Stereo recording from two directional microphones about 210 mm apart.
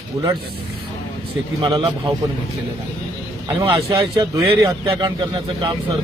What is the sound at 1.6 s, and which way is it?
Speech, 25° right (ahead or behind).